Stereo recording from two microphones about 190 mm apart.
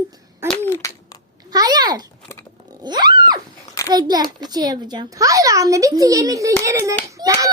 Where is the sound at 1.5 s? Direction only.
20° right (ahead or behind).